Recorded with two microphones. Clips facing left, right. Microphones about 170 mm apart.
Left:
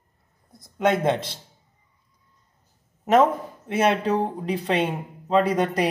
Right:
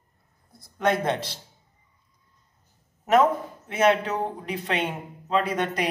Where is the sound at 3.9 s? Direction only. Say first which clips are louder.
Even; 35° left (ahead or behind).